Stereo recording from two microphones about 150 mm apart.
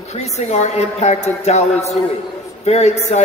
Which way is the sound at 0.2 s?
50° left (ahead or behind).